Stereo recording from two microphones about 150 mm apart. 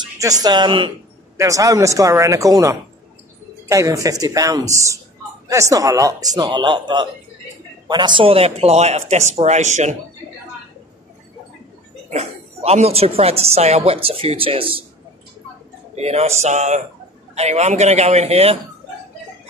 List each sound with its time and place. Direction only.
0.2 s speech: 25° right (ahead or behind)
1.3 s speech: 20° right (ahead or behind); by 9.9 s 50° right (ahead or behind)
12.1 s a woman's voice: 45° right (ahead or behind)
16.0 s speech: 45° right (ahead or behind)